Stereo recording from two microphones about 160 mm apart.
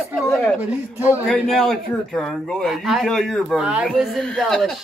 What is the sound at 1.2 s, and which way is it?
Speech, centre (ahead or behind).